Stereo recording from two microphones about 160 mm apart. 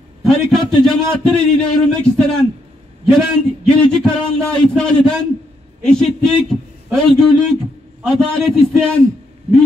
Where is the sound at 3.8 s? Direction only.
5° left (ahead or behind).